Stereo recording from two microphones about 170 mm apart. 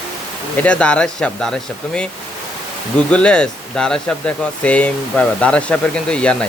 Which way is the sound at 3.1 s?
5° left (ahead or behind).